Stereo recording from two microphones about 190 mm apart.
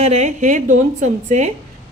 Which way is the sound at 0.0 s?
35° right (ahead or behind).